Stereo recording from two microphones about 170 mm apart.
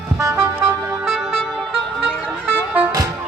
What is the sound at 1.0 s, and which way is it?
Music, centre (ahead or behind).